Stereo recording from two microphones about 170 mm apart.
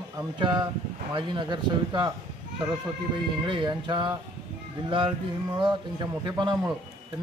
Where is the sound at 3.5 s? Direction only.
25° right (ahead or behind).